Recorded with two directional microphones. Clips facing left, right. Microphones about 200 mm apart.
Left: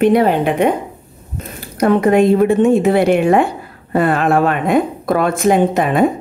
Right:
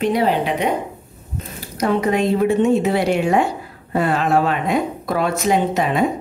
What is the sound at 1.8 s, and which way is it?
A woman's voice, 55° left (ahead or behind).